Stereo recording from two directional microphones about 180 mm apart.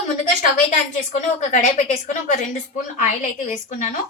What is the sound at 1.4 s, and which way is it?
Speech, 40° left (ahead or behind).